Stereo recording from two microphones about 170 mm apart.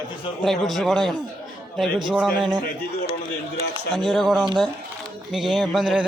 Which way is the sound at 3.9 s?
Centre (ahead or behind).